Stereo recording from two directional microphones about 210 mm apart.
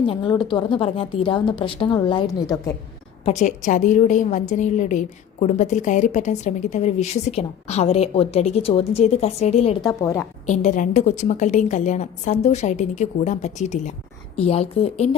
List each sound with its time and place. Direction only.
0.0 s speech: 20° left (ahead or behind)
3.2 s a woman's voice: 35° left (ahead or behind)
9.8 s a woman's voice: 15° left (ahead or behind)
10.4 s a woman's voice: 35° left (ahead or behind)